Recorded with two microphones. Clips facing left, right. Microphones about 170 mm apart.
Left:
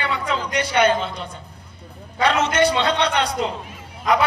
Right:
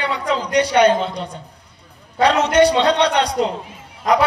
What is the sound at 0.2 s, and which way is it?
A man's voice, 35° right (ahead or behind).